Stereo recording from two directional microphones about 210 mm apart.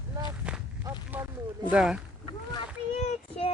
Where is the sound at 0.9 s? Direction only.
15° right (ahead or behind).